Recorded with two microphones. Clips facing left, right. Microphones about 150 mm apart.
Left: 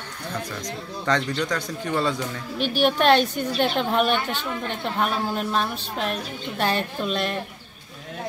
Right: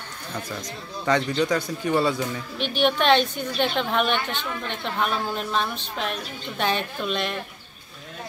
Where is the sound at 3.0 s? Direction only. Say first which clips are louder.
Left 3 dB; 45° left (ahead or behind).